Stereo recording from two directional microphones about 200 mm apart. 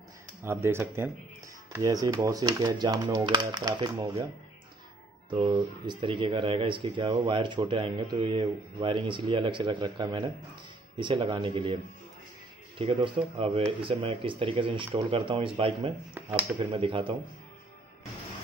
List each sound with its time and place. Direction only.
0.4 s speech: 10° right (ahead or behind)
5.3 s speech: 25° right (ahead or behind)
16.2 s speech: 10° right (ahead or behind)
16.5 s speech: 25° right (ahead or behind)